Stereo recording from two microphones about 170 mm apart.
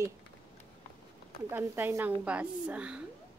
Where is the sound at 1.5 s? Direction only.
15° right (ahead or behind).